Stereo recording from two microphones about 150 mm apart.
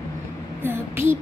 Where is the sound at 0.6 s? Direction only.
15° right (ahead or behind).